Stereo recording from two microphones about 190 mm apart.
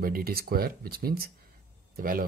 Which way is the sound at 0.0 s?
50° right (ahead or behind).